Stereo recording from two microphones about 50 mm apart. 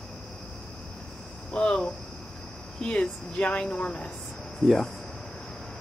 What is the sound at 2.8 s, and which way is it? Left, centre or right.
Speech, left.